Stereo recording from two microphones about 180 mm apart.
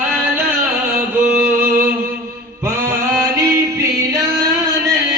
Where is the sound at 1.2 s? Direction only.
10° right (ahead or behind).